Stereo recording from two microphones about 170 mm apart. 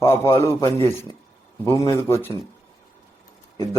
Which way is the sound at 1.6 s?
15° left (ahead or behind).